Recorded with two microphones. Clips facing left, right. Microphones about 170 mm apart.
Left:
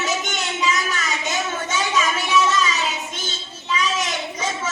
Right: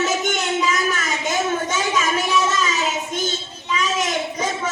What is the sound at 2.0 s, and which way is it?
Child singing, 45° right (ahead or behind).